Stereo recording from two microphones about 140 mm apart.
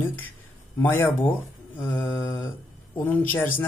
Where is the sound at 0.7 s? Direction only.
15° left (ahead or behind).